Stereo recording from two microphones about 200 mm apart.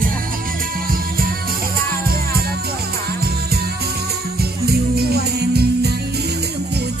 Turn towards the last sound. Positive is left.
turn(degrees=-55)  # may be behind; listen again after turning